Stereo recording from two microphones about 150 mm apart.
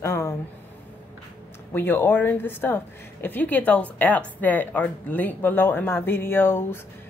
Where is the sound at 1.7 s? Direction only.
15° left (ahead or behind).